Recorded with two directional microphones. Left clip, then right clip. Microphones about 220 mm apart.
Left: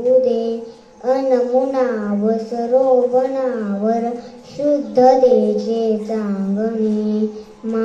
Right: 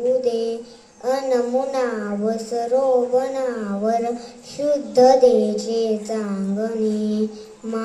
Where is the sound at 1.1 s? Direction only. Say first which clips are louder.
Left 4 dB; 50° right (ahead or behind).